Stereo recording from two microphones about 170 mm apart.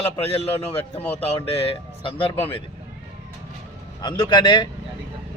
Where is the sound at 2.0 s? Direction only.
30° left (ahead or behind).